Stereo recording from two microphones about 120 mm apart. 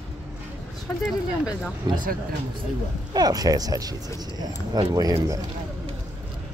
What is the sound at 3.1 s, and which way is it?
Speech, 30° right (ahead or behind).